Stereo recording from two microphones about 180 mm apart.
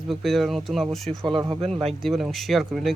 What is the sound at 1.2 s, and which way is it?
Speech, 20° right (ahead or behind).